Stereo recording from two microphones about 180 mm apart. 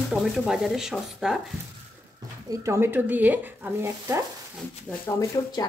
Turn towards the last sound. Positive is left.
turn(degrees=25)  # may be behind; listen again after turning